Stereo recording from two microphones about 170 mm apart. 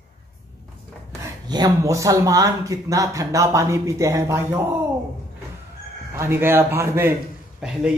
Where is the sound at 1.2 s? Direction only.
20° right (ahead or behind).